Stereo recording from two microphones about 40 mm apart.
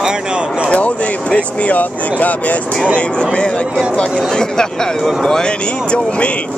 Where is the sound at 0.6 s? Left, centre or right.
Left.